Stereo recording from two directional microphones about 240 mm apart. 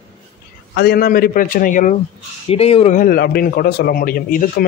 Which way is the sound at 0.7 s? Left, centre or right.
Left.